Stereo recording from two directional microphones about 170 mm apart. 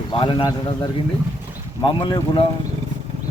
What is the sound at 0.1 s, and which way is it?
Speech, 30° left (ahead or behind).